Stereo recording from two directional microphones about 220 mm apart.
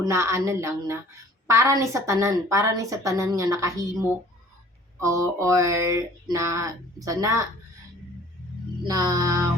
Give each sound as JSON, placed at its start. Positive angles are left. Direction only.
{"t": 0.0, "sound": "speech", "side_deg": -15}
{"t": 4.9, "sound": "speech", "side_deg": -15}
{"t": 8.8, "sound": "speech", "side_deg": -15}